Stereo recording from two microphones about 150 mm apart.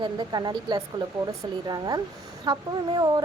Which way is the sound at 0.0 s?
30° right (ahead or behind).